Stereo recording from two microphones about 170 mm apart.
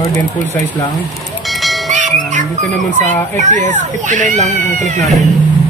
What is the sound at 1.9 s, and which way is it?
Bell, 45° right (ahead or behind).